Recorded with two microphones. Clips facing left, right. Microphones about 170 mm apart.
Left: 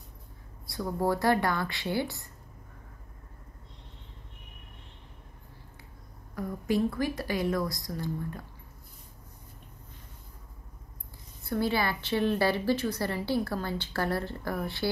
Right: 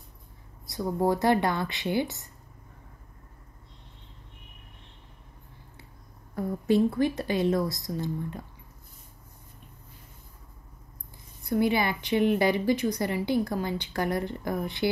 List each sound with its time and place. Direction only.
0.7 s a woman's voice: 20° right (ahead or behind)
6.3 s a woman's voice: 25° right (ahead or behind)
11.4 s a woman's voice: 15° right (ahead or behind)